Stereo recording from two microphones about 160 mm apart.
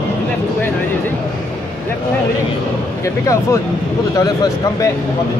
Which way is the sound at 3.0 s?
20° left (ahead or behind).